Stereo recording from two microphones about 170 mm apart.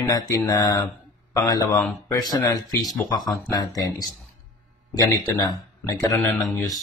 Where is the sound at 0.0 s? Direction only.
20° left (ahead or behind).